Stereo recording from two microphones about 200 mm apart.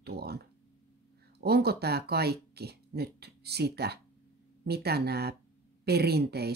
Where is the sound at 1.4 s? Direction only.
55° right (ahead or behind).